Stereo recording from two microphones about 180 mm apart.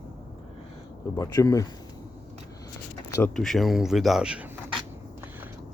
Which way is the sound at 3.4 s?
Centre (ahead or behind).